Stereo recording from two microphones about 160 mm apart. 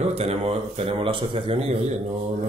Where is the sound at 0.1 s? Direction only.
40° right (ahead or behind).